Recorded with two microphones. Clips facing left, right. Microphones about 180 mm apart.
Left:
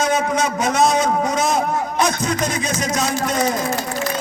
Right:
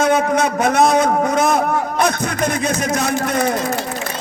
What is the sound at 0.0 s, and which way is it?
A man's voice, 60° right (ahead or behind).